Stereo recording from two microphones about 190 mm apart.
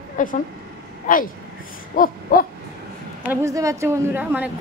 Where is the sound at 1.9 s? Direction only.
45° left (ahead or behind).